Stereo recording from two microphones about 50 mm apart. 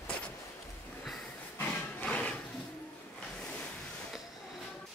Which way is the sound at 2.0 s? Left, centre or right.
Left.